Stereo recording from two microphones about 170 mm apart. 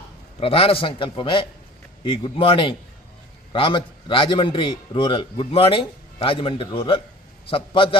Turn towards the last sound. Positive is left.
turn(degrees=30)  # may be behind; listen again after turning